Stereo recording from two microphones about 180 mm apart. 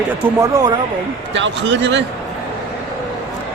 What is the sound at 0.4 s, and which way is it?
Speech, 20° right (ahead or behind).